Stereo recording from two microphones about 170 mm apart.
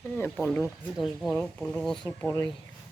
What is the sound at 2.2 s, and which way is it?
Speech, 15° left (ahead or behind).